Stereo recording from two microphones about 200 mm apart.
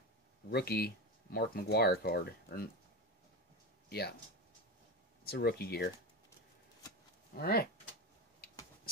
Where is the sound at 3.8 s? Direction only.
55° left (ahead or behind).